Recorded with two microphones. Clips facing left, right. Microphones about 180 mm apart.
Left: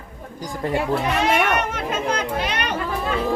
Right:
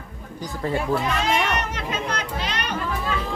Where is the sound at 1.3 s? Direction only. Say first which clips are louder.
Left 3 dB; 55° left (ahead or behind).